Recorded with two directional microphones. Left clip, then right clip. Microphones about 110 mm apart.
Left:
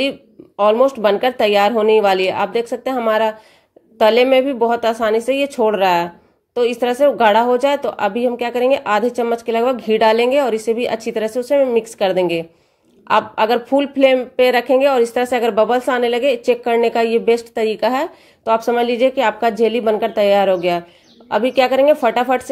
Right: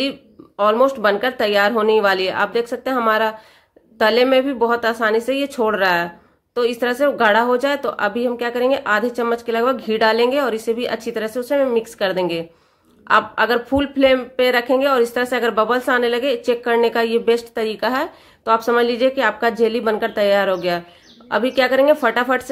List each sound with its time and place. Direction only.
0.6 s speech: 15° left (ahead or behind)